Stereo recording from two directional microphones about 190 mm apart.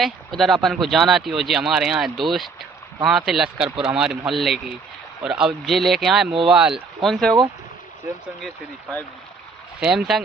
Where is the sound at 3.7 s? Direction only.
30° right (ahead or behind).